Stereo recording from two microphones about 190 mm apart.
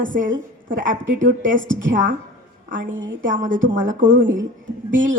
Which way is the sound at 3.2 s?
45° right (ahead or behind).